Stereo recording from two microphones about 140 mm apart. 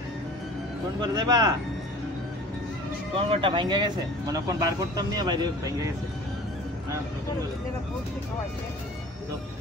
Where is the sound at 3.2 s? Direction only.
40° right (ahead or behind).